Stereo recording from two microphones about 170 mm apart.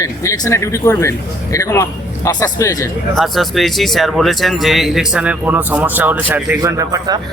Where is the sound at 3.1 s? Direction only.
Centre (ahead or behind); by 7.2 s 20° right (ahead or behind).